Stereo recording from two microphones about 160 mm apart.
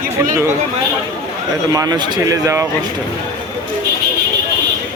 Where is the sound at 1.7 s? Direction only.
25° right (ahead or behind).